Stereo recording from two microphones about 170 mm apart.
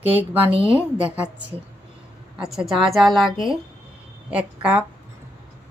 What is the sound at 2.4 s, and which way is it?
Speech, centre (ahead or behind).